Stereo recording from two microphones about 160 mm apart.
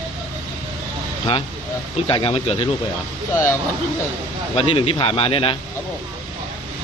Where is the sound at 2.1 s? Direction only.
35° left (ahead or behind).